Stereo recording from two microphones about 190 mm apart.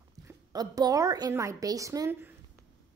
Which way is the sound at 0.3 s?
20° right (ahead or behind).